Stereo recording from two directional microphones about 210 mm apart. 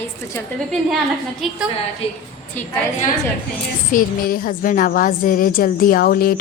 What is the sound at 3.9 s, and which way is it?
A woman's voice, 40° left (ahead or behind).